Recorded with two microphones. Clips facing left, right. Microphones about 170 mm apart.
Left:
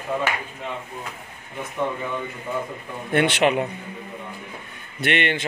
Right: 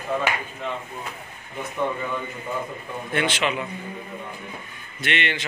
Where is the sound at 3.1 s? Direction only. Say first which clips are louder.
Left 6 dB; 55° left (ahead or behind).